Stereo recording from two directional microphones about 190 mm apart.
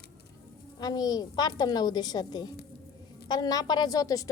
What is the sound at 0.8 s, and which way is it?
A woman's voice, 20° left (ahead or behind).